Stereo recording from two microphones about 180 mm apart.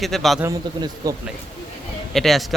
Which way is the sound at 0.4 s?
20° right (ahead or behind).